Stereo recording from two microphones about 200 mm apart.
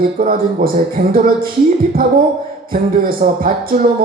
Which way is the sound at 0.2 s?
45° right (ahead or behind).